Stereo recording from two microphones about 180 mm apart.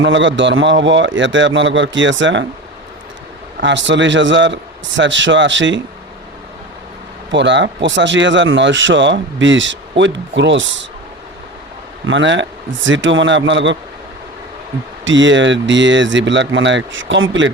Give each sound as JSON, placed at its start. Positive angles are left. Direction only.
{"t": 0.0, "sound": "a man's voice", "side_deg": -90}
{"t": 3.6, "sound": "a man's voice", "side_deg": -85}
{"t": 7.3, "sound": "a man's voice", "side_deg": -85}
{"t": 12.0, "sound": "a man's voice", "side_deg": -90}
{"t": 15.0, "sound": "a man's voice", "side_deg": -90}